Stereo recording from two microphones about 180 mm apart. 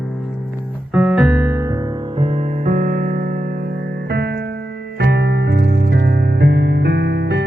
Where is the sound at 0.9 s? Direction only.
Centre (ahead or behind).